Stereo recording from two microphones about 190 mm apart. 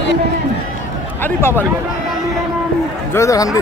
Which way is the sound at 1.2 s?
10° left (ahead or behind).